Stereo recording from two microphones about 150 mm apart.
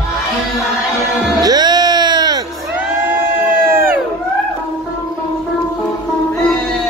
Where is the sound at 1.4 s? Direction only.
25° right (ahead or behind).